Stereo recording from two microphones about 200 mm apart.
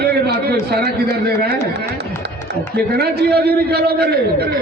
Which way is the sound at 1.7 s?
55° right (ahead or behind).